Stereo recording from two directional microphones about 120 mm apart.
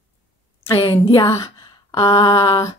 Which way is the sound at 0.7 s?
55° left (ahead or behind).